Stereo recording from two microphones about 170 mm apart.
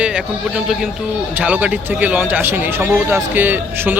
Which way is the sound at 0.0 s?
5° right (ahead or behind).